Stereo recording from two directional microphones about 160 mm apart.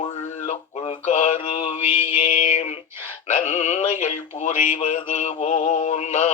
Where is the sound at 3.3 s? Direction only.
50° left (ahead or behind).